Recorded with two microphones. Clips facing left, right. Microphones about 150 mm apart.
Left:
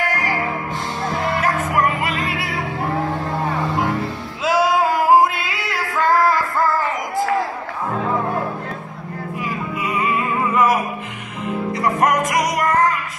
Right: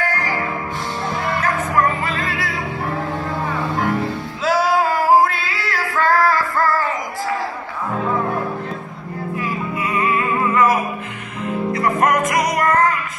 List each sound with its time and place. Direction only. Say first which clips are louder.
0.1 s music: left 1 dB; 20° left (ahead or behind)
5.2 s music: even; 20° left (ahead or behind)
9.4 s music: right 1 dB; 15° left (ahead or behind)
11.8 s music: even; 15° left (ahead or behind)